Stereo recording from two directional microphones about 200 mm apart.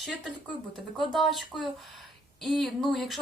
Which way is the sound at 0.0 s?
Centre (ahead or behind).